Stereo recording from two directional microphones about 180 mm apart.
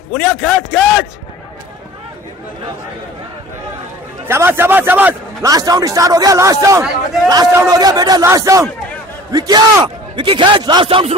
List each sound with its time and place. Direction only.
0.1 s a man's voice: centre (ahead or behind)
4.3 s a man's voice: 15° right (ahead or behind); by 11.1 s 30° right (ahead or behind)